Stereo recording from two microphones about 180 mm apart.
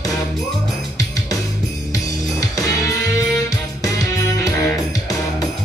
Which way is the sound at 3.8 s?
20° left (ahead or behind).